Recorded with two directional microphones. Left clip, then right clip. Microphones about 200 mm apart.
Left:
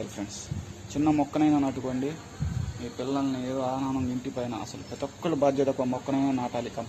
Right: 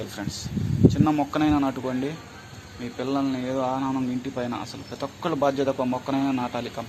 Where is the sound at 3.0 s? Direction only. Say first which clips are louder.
Right 3 dB; 30° right (ahead or behind).